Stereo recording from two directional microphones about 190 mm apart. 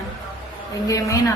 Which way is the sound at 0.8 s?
15° left (ahead or behind).